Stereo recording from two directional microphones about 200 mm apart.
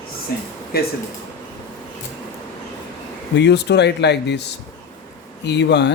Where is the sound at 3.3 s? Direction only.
60° left (ahead or behind).